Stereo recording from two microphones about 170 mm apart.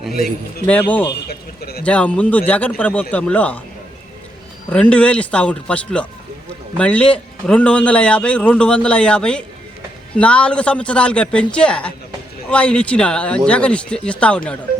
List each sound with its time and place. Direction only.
0.7 s a man's voice: 10° left (ahead or behind)
1.3 s a sound: 65° left (ahead or behind)
1.8 s a man's voice: 5° left (ahead or behind)
4.7 s a man's voice: 5° left (ahead or behind)